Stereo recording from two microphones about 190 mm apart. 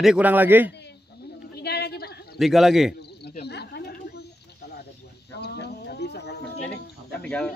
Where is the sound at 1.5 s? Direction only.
60° left (ahead or behind).